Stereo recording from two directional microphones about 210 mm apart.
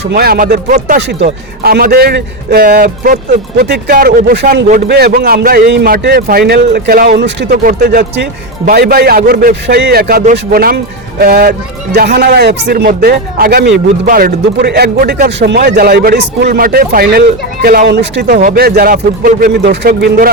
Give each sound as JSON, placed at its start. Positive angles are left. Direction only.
{"t": 0.1, "sound": "a man's voice", "side_deg": -45}